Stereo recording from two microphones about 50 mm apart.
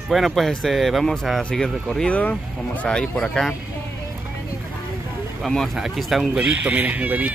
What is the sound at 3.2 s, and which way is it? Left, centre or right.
Speech, centre.